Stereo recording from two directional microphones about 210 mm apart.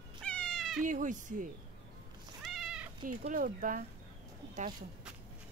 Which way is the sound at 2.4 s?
Centre (ahead or behind).